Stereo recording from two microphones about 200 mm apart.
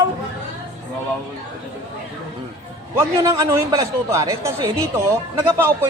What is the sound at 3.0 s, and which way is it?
A woman's voice, 15° right (ahead or behind).